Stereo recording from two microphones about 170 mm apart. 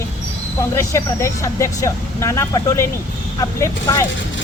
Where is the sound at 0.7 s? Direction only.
20° left (ahead or behind).